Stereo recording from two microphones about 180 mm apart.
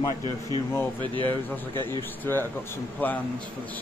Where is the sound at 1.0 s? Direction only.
25° right (ahead or behind).